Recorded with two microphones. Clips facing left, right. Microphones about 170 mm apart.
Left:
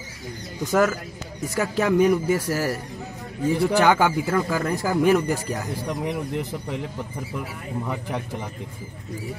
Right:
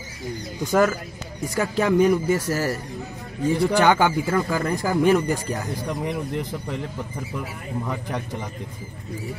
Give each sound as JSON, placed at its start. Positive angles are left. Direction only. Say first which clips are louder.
{"t": 0.7, "sound": "a man's voice", "louder": "right 1 dB", "side_deg": 5}